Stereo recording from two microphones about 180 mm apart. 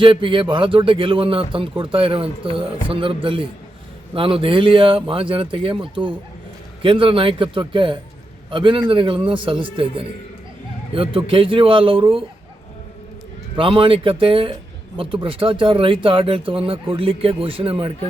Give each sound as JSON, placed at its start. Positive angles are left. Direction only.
{"t": 0.0, "sound": "speech", "side_deg": -30}
{"t": 10.9, "sound": "speech", "side_deg": -30}
{"t": 13.6, "sound": "speech", "side_deg": -30}